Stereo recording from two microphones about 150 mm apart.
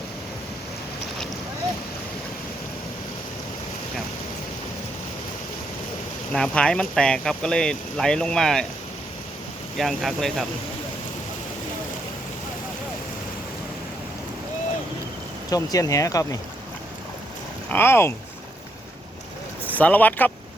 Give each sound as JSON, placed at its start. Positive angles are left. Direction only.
{"t": 6.3, "sound": "speech", "side_deg": 5}
{"t": 9.7, "sound": "speech", "side_deg": 0}
{"t": 15.4, "sound": "speech", "side_deg": 25}
{"t": 17.7, "sound": "speech", "side_deg": 15}
{"t": 19.6, "sound": "speech", "side_deg": 10}